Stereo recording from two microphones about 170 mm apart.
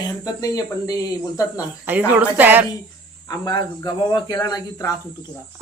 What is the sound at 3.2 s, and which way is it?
Speech, 20° left (ahead or behind).